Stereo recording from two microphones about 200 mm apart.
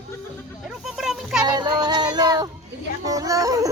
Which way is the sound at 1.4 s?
20° right (ahead or behind).